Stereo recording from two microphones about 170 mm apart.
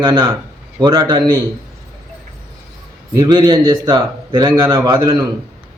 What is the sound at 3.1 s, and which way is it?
A man's voice, 25° right (ahead or behind).